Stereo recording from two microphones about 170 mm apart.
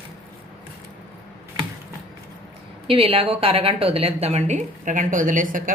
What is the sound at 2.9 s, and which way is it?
A woman's voice, 35° right (ahead or behind).